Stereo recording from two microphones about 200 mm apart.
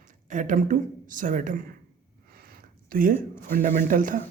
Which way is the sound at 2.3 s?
45° right (ahead or behind).